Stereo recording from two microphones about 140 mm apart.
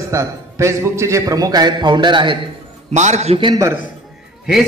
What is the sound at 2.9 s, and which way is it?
Speech, 55° right (ahead or behind).